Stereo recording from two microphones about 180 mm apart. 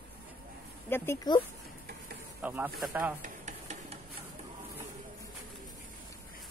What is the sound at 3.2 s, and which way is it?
Stir, 40° right (ahead or behind).